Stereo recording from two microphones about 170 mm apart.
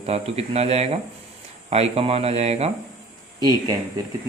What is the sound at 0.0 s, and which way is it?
A man's voice, 35° right (ahead or behind).